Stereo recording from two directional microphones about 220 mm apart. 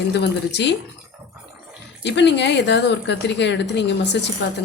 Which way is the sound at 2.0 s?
50° left (ahead or behind).